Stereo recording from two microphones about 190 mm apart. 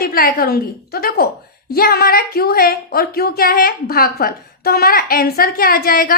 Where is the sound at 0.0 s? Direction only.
50° left (ahead or behind).